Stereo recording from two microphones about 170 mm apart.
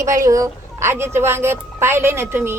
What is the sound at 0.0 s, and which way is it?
Speech, 20° right (ahead or behind).